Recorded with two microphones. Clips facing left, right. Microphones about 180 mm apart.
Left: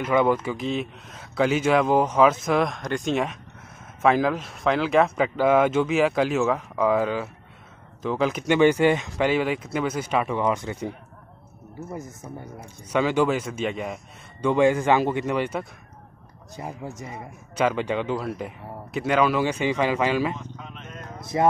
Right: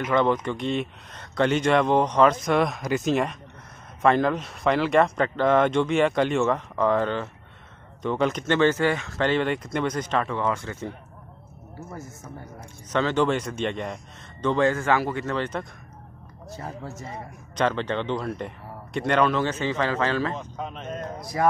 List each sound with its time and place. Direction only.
0.0 s speech: 10° left (ahead or behind)
12.5 s speech: 10° left (ahead or behind)
21.2 s speech: 25° left (ahead or behind)